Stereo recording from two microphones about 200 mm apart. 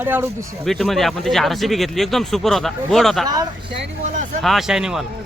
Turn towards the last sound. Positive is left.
turn(degrees=-5)  # may be behind; listen again after turning